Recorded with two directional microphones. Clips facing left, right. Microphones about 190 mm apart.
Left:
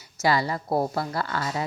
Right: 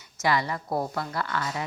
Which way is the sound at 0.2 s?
35° left (ahead or behind).